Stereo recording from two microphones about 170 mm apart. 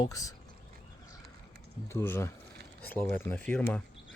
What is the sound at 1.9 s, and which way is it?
Speech, 15° left (ahead or behind).